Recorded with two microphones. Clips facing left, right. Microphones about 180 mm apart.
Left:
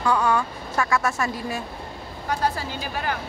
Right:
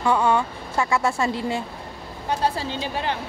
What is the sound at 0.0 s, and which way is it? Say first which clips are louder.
A woman's voice: right 2 dB; 25° right (ahead or behind).